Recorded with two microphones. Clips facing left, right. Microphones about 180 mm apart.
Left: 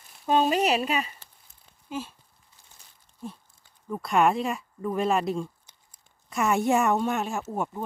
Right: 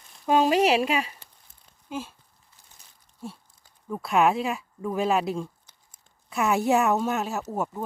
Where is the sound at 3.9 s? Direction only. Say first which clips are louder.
Right 1 dB; 5° right (ahead or behind).